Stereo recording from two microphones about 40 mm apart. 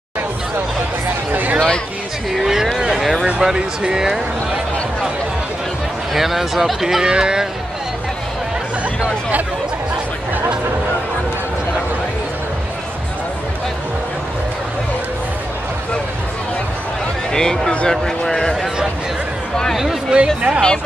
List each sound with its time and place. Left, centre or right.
1.3 s a sound: right
2.3 s a sound: centre
3.3 s speech: centre
6.1 s speech: centre
7.1 s speech: right
17.3 s speech: centre
20.1 s speech: right